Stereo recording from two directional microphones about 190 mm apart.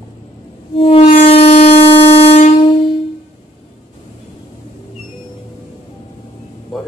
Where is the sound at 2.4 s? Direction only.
30° left (ahead or behind).